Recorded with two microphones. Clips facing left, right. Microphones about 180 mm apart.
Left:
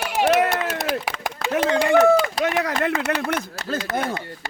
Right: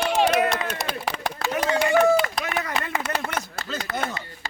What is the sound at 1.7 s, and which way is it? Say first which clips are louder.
Clapping: left 3 dB; 60° left (ahead or behind).